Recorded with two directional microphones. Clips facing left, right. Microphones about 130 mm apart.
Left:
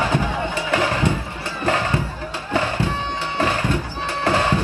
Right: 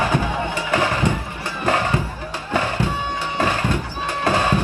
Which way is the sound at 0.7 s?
15° right (ahead or behind).